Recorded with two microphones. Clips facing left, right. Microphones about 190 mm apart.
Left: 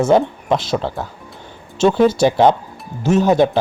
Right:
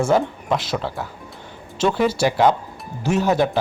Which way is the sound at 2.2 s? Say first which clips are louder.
Left 4 dB; 25° left (ahead or behind).